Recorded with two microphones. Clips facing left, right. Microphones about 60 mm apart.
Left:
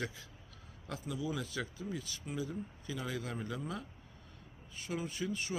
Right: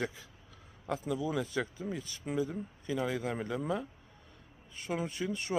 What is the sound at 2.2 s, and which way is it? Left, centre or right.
Speech, right.